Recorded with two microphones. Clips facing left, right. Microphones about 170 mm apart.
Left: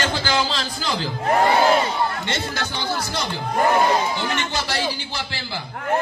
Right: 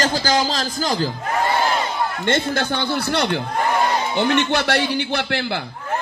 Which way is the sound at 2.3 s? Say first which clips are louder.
Right 7 dB; 55° right (ahead or behind).